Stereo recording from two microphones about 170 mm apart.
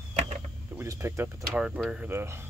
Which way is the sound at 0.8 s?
15° right (ahead or behind).